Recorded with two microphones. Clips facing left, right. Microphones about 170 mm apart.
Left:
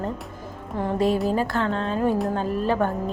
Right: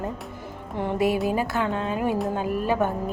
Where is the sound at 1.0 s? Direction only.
5° right (ahead or behind).